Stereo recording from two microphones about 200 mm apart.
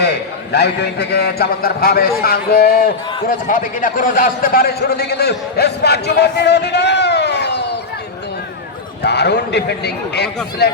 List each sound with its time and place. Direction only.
0.0 s a man's voice: 55° left (ahead or behind)
9.0 s a man's voice: 55° left (ahead or behind)